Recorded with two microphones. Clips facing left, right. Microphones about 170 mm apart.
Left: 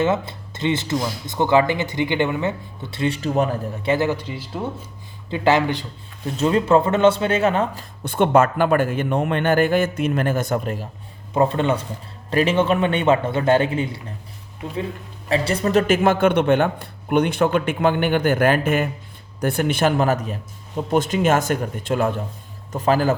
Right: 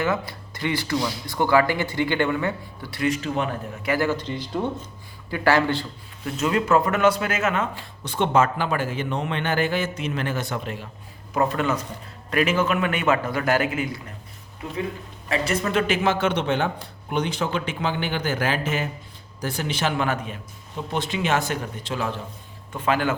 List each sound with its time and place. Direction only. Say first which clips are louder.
0.0 s speech: left 4 dB; 25° left (ahead or behind); by 3.6 s 40° left (ahead or behind)
3.8 s speech: left 3 dB; 20° left (ahead or behind); by 4.9 s 5° left (ahead or behind)
5.3 s speech: left 2 dB; 20° left (ahead or behind)
6.3 s speech: left 4 dB; 30° left (ahead or behind)
8.0 s a man's voice: left 4 dB; 55° left (ahead or behind)
11.3 s speech: left 4 dB; 30° left (ahead or behind)
15.3 s a man's voice: left 4 dB; 30° left (ahead or behind); by 22.2 s 50° left (ahead or behind)
22.7 s speech: left 5 dB; 40° left (ahead or behind)